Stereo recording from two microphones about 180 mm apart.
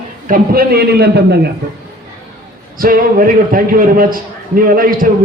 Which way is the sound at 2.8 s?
50° right (ahead or behind).